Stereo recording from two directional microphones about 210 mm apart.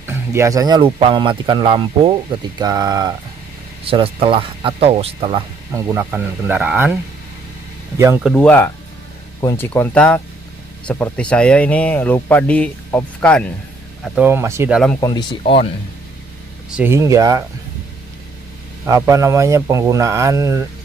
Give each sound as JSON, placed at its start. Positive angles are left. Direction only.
{"t": 0.0, "sound": "speech", "side_deg": -10}
{"t": 8.2, "sound": "speech", "side_deg": 5}
{"t": 14.0, "sound": "speech", "side_deg": -5}
{"t": 15.0, "sound": "speech", "side_deg": 20}
{"t": 16.7, "sound": "speech", "side_deg": -10}
{"t": 18.9, "sound": "speech", "side_deg": -15}